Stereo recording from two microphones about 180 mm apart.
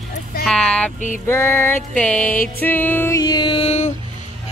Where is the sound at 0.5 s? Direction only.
5° left (ahead or behind).